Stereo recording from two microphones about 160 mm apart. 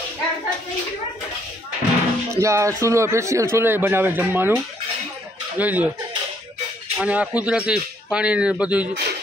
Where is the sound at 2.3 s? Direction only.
20° right (ahead or behind).